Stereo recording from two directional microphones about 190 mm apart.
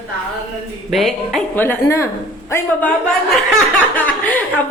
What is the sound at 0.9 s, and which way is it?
A woman's voice, centre (ahead or behind).